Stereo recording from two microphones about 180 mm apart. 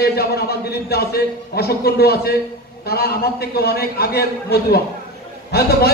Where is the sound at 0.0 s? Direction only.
60° left (ahead or behind).